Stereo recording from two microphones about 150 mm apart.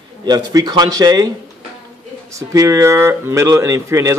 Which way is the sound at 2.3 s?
20° right (ahead or behind).